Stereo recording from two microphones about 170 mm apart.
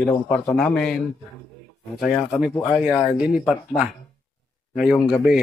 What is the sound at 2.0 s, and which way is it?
A man's voice, centre (ahead or behind).